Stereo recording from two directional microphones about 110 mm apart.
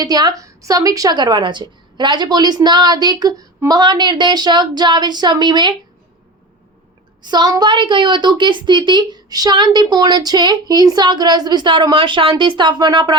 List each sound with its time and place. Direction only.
0.0 s speech: 35° right (ahead or behind)
7.3 s a woman's voice: 40° right (ahead or behind)